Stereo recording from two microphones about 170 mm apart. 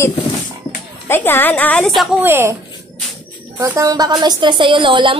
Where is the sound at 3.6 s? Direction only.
20° right (ahead or behind).